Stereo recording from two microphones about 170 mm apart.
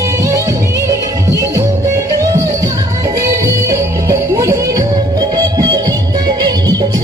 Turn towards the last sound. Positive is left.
turn(degrees=-25)  # may be behind; listen again after turning